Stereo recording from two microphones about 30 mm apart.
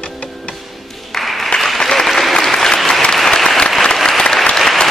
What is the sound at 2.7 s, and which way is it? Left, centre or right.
Applause, centre.